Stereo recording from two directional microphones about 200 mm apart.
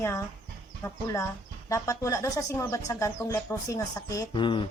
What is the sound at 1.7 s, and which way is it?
Speech, 15° left (ahead or behind).